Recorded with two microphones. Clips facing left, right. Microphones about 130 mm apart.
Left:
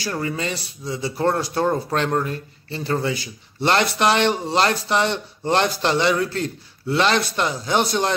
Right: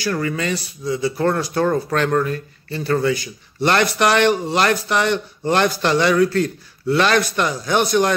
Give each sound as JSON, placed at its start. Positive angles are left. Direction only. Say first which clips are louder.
{"t": 0.0, "sound": "a man's voice", "louder": "right 3 dB", "side_deg": 25}